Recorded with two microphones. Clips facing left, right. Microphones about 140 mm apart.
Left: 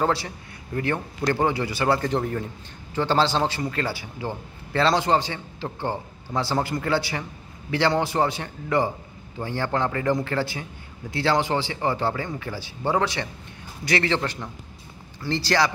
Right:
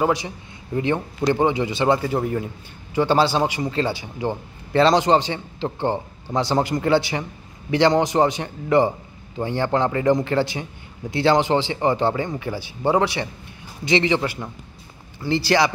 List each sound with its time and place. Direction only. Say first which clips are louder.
0.0 s a man's voice: right 3 dB; 15° right (ahead or behind)
2.0 s a man's voice: right 2 dB; 10° right (ahead or behind)